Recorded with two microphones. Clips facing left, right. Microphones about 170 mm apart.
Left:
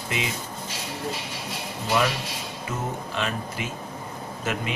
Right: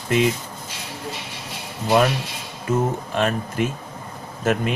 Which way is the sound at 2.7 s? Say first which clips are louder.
Right 10 dB; 50° right (ahead or behind).